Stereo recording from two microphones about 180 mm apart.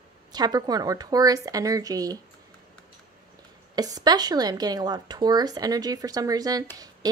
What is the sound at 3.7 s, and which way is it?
Speech, 20° right (ahead or behind).